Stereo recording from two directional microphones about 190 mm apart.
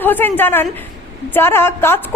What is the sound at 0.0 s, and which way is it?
A woman's voice, 10° left (ahead or behind).